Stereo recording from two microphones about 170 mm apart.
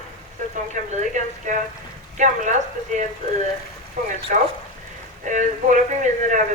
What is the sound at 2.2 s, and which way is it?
Speech, 45° right (ahead or behind).